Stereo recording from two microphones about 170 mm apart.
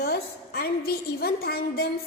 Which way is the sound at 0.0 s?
65° left (ahead or behind).